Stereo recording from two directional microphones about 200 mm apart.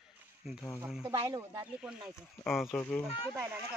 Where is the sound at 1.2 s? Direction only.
15° right (ahead or behind).